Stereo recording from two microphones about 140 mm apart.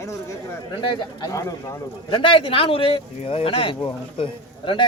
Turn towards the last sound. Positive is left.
turn(degrees=35)  # may be behind; listen again after turning